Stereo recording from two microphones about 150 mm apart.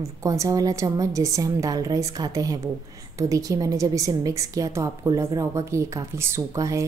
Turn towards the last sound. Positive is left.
turn(degrees=-20)  # may be behind; listen again after turning